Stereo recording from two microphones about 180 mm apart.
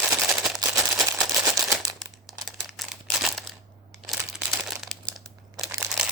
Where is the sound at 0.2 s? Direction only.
Centre (ahead or behind).